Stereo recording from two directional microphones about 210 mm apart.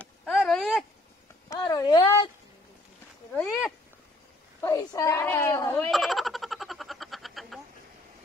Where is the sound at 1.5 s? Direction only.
20° left (ahead or behind).